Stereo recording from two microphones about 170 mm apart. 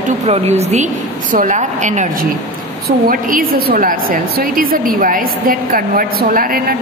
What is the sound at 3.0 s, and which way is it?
A woman's voice, 55° right (ahead or behind).